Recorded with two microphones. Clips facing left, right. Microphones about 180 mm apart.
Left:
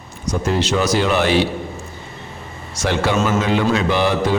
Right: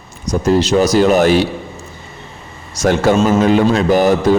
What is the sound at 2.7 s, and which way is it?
A man's voice, 45° right (ahead or behind).